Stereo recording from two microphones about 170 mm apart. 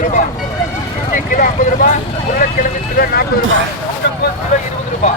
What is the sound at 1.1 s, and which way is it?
Speech, 50° left (ahead or behind).